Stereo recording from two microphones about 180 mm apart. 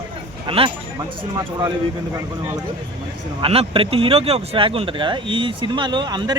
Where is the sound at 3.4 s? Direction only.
30° right (ahead or behind).